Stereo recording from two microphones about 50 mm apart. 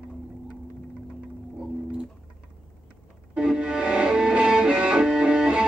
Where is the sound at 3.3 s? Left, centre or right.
Centre.